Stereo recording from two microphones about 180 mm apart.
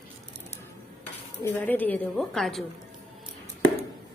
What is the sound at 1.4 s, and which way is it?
A woman's voice, 15° left (ahead or behind).